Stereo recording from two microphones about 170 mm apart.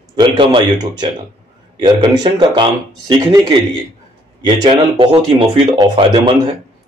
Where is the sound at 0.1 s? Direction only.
30° right (ahead or behind).